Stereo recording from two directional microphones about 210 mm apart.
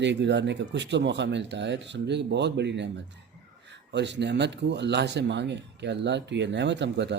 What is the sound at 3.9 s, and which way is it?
A man's voice, 55° right (ahead or behind).